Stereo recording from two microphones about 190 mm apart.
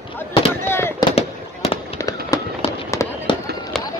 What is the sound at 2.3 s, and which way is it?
Fireworks, 15° left (ahead or behind).